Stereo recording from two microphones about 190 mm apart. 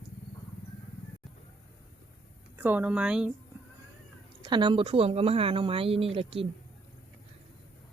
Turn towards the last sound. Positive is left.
turn(degrees=-30)  # may be behind; listen again after turning